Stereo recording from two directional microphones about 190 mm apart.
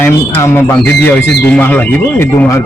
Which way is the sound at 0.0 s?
10° left (ahead or behind).